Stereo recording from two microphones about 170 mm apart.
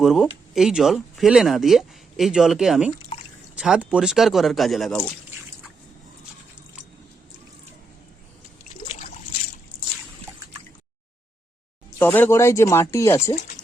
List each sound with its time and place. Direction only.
0.0 s speech: centre (ahead or behind)
8.8 s a sound: 30° left (ahead or behind)
9.7 s trickle: 20° right (ahead or behind)
11.9 s speech: 10° left (ahead or behind)